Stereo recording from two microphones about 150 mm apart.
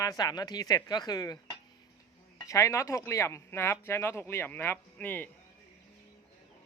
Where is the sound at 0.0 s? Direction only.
25° left (ahead or behind).